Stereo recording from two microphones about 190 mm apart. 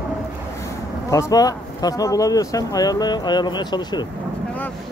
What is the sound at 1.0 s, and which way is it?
Speech, 15° left (ahead or behind).